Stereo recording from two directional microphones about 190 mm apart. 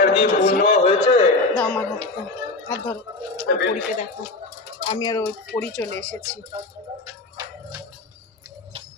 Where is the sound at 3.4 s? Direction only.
65° left (ahead or behind).